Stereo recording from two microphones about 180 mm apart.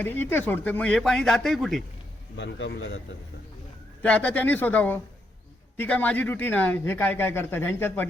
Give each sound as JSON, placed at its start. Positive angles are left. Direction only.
{"t": 0.0, "sound": "speech", "side_deg": 10}
{"t": 2.3, "sound": "a man's voice", "side_deg": 70}
{"t": 4.0, "sound": "speech", "side_deg": 5}